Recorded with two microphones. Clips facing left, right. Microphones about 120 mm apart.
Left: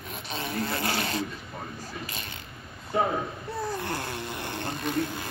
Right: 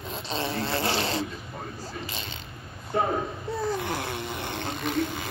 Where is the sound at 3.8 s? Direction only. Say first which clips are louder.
Right 2 dB; 5° right (ahead or behind).